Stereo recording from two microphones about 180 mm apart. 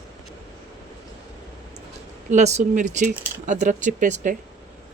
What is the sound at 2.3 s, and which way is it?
Speech, 40° right (ahead or behind).